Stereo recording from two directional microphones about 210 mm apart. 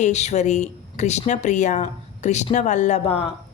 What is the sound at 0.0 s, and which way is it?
Speech, 30° left (ahead or behind).